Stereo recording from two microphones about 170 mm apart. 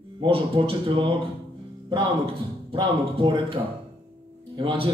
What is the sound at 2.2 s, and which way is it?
A man's voice, 30° right (ahead or behind).